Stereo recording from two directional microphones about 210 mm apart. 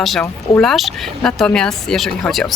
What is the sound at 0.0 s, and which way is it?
Speech, centre (ahead or behind).